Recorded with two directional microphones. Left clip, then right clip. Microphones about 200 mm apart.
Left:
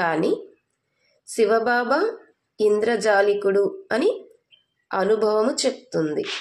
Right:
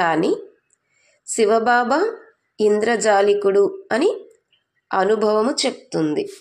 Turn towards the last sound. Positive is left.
turn(degrees=-25)  # may be behind; listen again after turning